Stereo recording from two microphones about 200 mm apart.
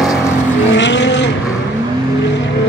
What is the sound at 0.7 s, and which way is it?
Vehicle, 60° left (ahead or behind).